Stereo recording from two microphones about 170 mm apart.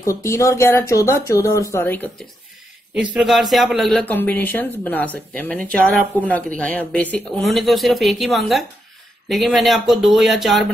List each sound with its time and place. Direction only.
0.0 s speech: 15° left (ahead or behind)
2.9 s speech: 5° right (ahead or behind)